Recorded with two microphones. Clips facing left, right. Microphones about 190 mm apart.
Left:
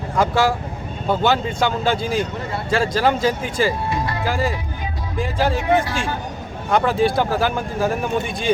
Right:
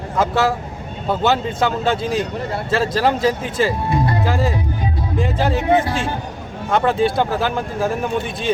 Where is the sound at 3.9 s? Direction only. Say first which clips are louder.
Right 5 dB; 45° right (ahead or behind).